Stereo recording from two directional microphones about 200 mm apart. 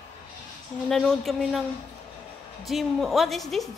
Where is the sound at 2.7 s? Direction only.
Centre (ahead or behind).